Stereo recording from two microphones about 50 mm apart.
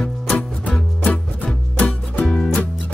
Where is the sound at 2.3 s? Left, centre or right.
Left.